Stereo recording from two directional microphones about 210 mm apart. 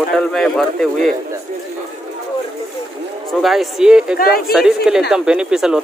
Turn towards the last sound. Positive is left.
turn(degrees=-5)  # may be behind; listen again after turning